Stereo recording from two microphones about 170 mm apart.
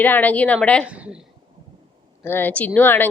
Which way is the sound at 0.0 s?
10° left (ahead or behind).